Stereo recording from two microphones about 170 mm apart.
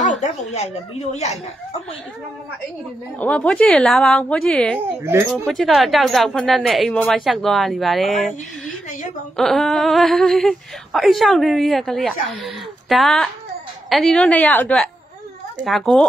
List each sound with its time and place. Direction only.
0.0 s speech: 40° left (ahead or behind)
3.2 s a woman's voice: 5° left (ahead or behind)
9.4 s a woman's voice: centre (ahead or behind)